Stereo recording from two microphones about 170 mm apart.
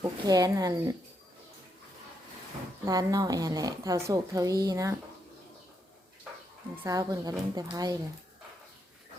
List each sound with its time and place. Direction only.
0.0 s speech: 20° right (ahead or behind)
2.8 s speech: 20° right (ahead or behind)
6.8 s speech: 20° right (ahead or behind)